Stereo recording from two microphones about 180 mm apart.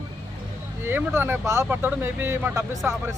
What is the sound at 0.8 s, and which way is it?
Speech, 10° right (ahead or behind).